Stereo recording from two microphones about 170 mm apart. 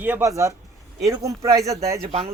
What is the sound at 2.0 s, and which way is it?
Speech, 35° right (ahead or behind).